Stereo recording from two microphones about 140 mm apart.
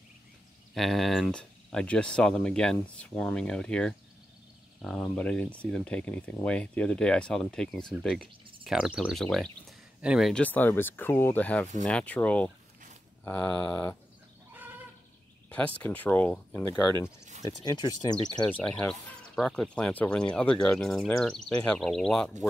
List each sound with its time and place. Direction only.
0.7 s speech: centre (ahead or behind)
10.4 s speech: 15° left (ahead or behind)
15.5 s speech: 10° left (ahead or behind)
17.6 s speech: 25° left (ahead or behind)
18.5 s speech: 5° left (ahead or behind)